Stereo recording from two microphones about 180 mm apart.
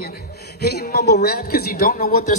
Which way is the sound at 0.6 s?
60° left (ahead or behind).